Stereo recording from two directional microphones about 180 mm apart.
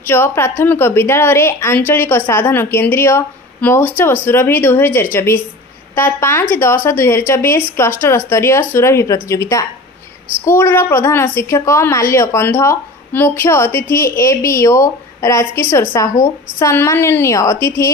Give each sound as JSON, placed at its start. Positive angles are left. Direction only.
{"t": 0.0, "sound": "a woman's voice", "side_deg": 15}